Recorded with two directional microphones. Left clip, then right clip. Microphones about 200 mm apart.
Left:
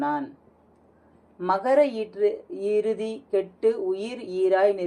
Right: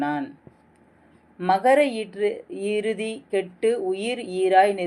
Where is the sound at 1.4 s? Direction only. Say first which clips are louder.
Right 2 dB; 35° right (ahead or behind).